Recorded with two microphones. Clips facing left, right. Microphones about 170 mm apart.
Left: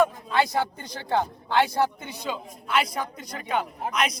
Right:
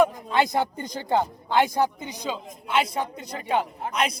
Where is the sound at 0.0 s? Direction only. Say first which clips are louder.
Right 1 dB; 20° right (ahead or behind).